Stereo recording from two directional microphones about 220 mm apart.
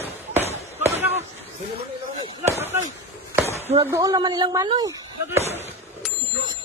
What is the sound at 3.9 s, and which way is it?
Speech, 15° right (ahead or behind).